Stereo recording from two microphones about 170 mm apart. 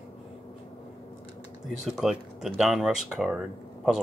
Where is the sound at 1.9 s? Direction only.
Centre (ahead or behind).